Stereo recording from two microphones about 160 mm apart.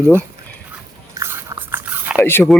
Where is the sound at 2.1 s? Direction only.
15° left (ahead or behind).